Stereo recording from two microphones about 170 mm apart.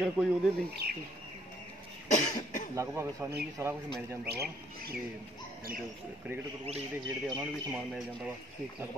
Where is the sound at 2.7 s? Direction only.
15° right (ahead or behind).